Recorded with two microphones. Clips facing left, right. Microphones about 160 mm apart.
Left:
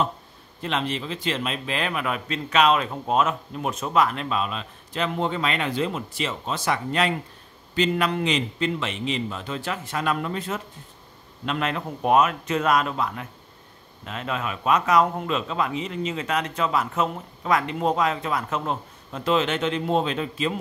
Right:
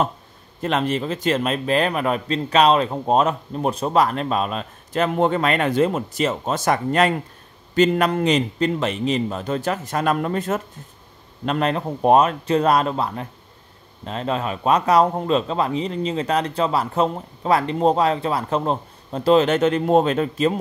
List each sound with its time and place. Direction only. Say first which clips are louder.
0.6 s a man's voice: right 6 dB; 45° right (ahead or behind)